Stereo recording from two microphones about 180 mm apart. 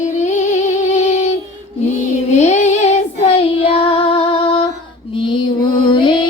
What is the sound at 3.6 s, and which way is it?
Female singing, 30° left (ahead or behind).